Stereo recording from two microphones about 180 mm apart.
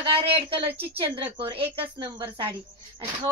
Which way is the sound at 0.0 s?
30° right (ahead or behind).